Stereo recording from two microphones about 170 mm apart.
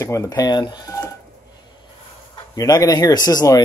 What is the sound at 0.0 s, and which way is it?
Speech, 20° left (ahead or behind).